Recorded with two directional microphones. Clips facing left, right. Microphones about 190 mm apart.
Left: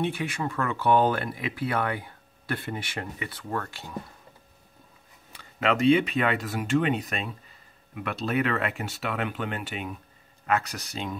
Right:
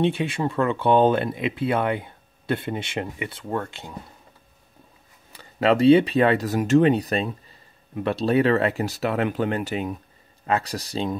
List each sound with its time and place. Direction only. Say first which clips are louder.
0.0 s speech: right 6 dB; 25° right (ahead or behind)
5.6 s speech: right 6 dB; 35° right (ahead or behind)